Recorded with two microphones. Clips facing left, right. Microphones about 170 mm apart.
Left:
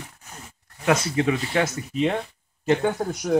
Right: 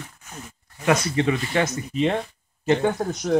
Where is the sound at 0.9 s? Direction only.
5° left (ahead or behind).